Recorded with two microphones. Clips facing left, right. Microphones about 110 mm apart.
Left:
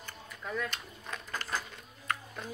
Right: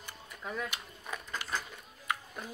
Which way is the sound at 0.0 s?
15° right (ahead or behind).